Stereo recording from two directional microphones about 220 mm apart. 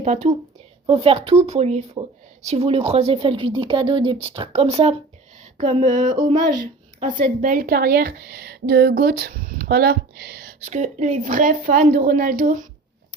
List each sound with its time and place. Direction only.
0.0 s a woman's voice: 35° right (ahead or behind)
10.7 s speech: 35° right (ahead or behind)